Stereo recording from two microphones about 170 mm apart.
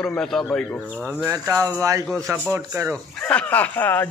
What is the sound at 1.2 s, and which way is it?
Speech, 15° right (ahead or behind).